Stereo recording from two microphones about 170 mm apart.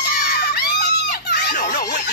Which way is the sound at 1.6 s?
80° left.